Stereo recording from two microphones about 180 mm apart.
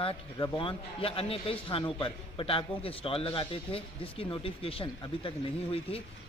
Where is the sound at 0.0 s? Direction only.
30° left (ahead or behind).